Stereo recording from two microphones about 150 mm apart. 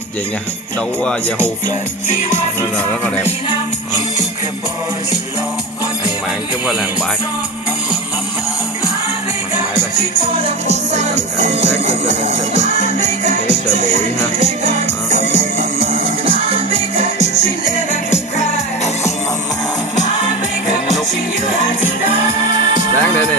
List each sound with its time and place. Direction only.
10.7 s music: 50° right (ahead or behind)
15.0 s music: 55° right (ahead or behind)
22.5 s music: 35° right (ahead or behind)